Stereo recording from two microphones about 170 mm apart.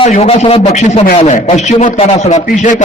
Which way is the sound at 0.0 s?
35° left (ahead or behind).